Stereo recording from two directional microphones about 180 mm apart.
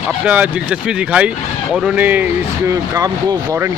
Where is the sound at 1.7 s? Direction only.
5° right (ahead or behind).